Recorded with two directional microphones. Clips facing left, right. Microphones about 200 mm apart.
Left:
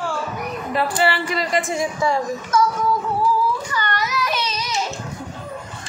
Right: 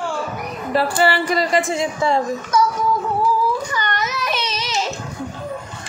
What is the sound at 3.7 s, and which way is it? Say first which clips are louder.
Child singing: even; 20° right (ahead or behind).